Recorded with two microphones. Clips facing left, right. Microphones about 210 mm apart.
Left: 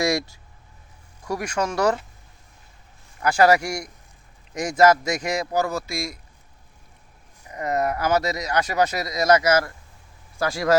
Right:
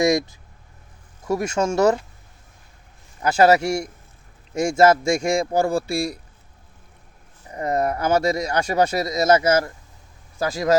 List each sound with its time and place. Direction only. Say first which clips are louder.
0.0 s vehicle: right 4 dB; 20° right (ahead or behind)
1.3 s speech: right 4 dB; 25° right (ahead or behind)
3.2 s speech: right 2 dB; 25° right (ahead or behind)
7.4 s speech: right 2 dB; 30° right (ahead or behind)